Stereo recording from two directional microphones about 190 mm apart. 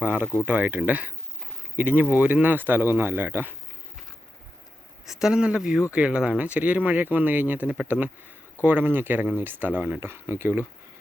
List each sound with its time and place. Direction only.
0.0 s speech: 10° right (ahead or behind)
5.0 s speech: centre (ahead or behind)